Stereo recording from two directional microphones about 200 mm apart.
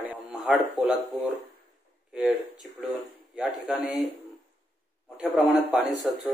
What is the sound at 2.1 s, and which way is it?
Speech, 5° right (ahead or behind).